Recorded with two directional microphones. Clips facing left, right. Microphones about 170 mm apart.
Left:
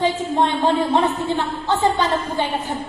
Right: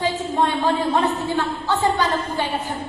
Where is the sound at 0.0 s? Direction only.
20° left (ahead or behind).